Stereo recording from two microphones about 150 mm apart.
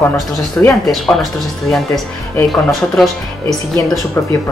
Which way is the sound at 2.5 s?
Centre (ahead or behind).